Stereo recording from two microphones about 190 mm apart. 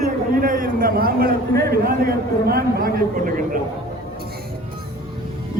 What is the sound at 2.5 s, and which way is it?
A man's voice, 50° right (ahead or behind).